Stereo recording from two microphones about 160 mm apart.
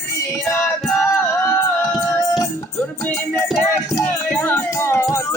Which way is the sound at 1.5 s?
5° left (ahead or behind).